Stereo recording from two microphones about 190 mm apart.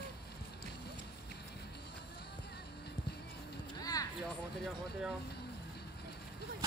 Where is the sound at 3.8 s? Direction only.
20° left (ahead or behind).